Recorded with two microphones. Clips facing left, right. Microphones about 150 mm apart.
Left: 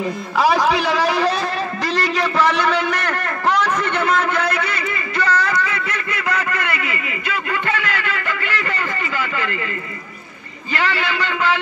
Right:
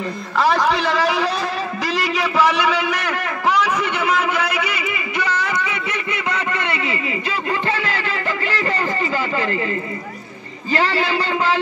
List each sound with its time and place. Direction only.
0.0 s a man's voice: 5° left (ahead or behind)
1.8 s a sound: 5° right (ahead or behind); by 9.6 s 35° right (ahead or behind)
10.7 s a man's voice: 35° right (ahead or behind)